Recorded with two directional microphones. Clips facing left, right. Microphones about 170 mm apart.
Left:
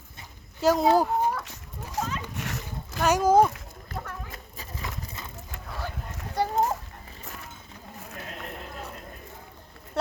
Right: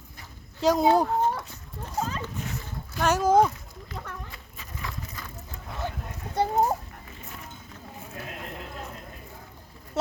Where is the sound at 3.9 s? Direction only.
45° left (ahead or behind).